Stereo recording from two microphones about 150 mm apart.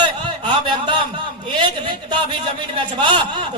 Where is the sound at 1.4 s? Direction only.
30° right (ahead or behind).